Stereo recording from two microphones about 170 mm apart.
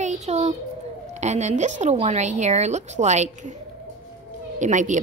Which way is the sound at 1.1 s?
45° right (ahead or behind).